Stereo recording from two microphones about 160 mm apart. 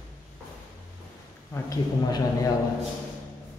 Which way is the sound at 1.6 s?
20° left (ahead or behind).